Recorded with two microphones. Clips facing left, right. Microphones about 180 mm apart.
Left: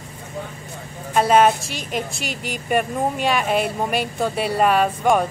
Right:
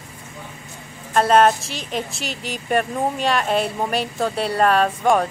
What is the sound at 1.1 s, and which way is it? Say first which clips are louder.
Speech: even; 5° left (ahead or behind).